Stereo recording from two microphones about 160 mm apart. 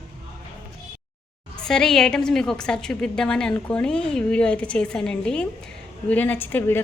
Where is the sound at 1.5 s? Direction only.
5° left (ahead or behind).